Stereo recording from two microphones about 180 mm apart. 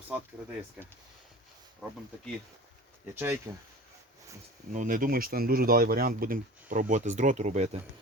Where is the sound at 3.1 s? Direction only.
10° right (ahead or behind).